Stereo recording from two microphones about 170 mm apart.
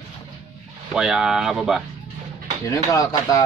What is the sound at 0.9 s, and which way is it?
Speech, 5° right (ahead or behind).